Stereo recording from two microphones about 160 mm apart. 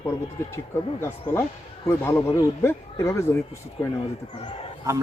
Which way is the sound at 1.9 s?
15° left (ahead or behind).